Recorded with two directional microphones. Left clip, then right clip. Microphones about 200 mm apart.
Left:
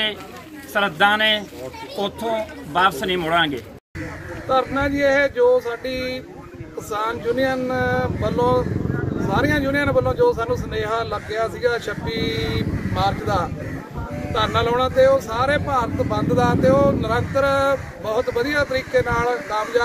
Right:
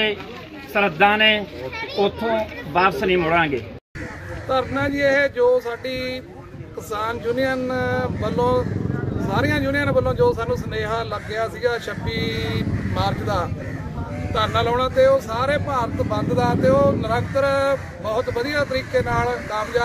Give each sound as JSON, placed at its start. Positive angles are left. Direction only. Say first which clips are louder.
{"t": 0.7, "sound": "speech", "louder": "right 1 dB", "side_deg": -5}
{"t": 2.7, "sound": "speech", "louder": "right 1 dB", "side_deg": -5}